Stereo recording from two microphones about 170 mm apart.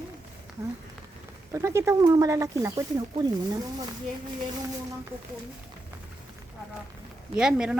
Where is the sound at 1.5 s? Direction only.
15° right (ahead or behind).